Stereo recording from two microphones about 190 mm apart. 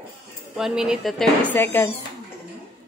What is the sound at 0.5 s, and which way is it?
Speech, 5° right (ahead or behind).